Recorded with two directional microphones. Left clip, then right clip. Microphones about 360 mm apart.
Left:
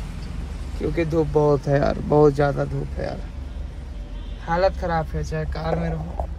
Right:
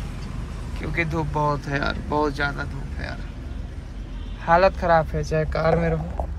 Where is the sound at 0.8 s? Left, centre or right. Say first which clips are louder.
Left 4 dB; centre.